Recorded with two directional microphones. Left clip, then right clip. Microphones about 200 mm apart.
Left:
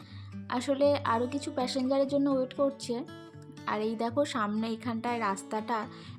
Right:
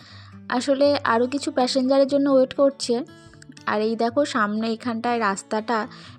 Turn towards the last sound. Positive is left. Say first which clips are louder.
# right 8 dB
turn(degrees=-30)  # may be behind; listen again after turning